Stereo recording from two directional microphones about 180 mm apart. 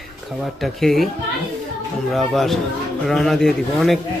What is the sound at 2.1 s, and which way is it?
Speech, centre (ahead or behind).